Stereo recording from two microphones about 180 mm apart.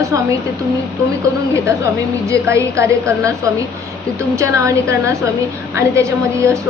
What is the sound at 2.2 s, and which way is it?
A woman's voice, 15° right (ahead or behind).